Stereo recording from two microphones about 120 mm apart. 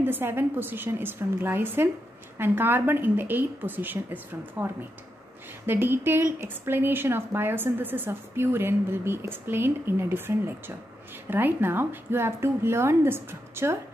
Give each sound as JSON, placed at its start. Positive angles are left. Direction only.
{"t": 0.0, "sound": "a woman's voice", "side_deg": -15}
{"t": 5.7, "sound": "a woman's voice", "side_deg": -20}